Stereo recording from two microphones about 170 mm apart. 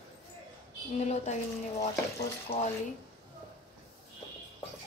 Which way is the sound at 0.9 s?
40° left (ahead or behind).